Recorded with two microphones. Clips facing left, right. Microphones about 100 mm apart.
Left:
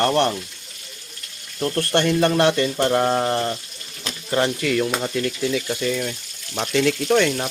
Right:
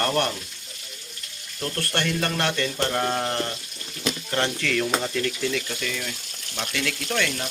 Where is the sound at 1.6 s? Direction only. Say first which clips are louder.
Left 7 dB; 20° left (ahead or behind).